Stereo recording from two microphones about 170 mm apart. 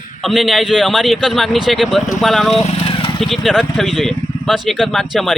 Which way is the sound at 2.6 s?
35° left (ahead or behind).